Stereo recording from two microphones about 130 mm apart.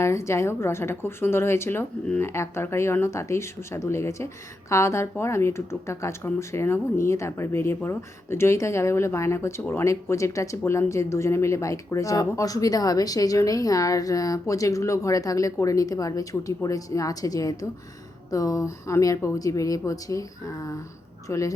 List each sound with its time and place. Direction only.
0.0 s speech: 20° left (ahead or behind)